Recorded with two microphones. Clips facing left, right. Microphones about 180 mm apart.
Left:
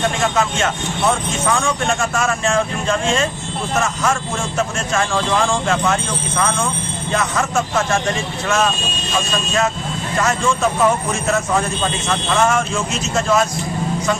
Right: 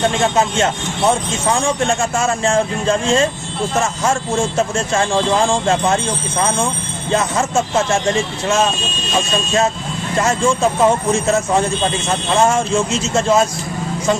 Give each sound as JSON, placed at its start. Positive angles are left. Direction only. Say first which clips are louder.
{"t": 0.2, "sound": "speech", "louder": "right 3 dB", "side_deg": -30}
{"t": 10.1, "sound": "speech", "louder": "right 3 dB", "side_deg": -30}